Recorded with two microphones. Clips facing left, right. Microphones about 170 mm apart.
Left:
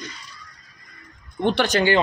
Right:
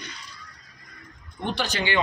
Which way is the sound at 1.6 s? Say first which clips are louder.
Left 6 dB; 45° left (ahead or behind).